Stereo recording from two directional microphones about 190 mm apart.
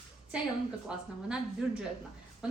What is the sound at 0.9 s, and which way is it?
Speech, 5° right (ahead or behind).